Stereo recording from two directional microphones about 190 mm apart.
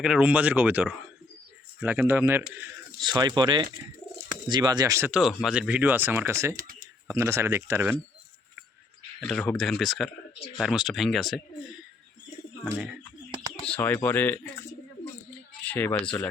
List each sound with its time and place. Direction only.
0.0 s speech: 5° right (ahead or behind)
3.0 s speech: 25° right (ahead or behind)
9.2 s speech: 5° left (ahead or behind)
13.7 s speech: 10° left (ahead or behind)
15.6 s speech: 10° left (ahead or behind)